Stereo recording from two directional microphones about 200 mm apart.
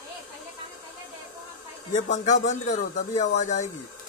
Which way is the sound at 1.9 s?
35° left (ahead or behind).